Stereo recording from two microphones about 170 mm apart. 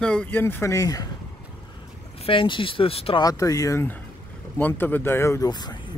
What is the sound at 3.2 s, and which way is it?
Speech, 20° left (ahead or behind).